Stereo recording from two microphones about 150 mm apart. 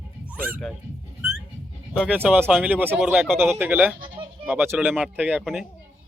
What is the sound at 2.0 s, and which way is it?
Speech, 10° right (ahead or behind).